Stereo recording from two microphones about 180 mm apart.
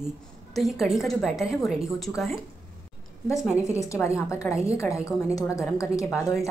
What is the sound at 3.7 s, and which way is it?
A woman's voice, 15° left (ahead or behind).